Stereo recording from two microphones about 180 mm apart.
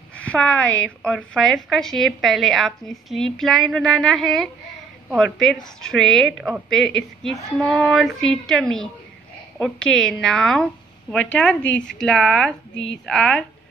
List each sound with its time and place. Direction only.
0.2 s a woman's voice: 5° left (ahead or behind)
12.7 s speech: 85° left
13.0 s a woman's voice: 5° left (ahead or behind)